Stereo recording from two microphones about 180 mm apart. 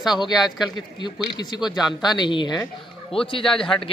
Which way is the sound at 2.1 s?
25° left (ahead or behind).